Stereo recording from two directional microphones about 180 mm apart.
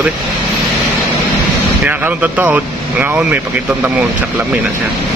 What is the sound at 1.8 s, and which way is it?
Speech, 10° right (ahead or behind).